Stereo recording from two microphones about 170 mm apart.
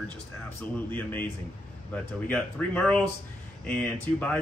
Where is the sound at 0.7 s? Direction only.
10° left (ahead or behind).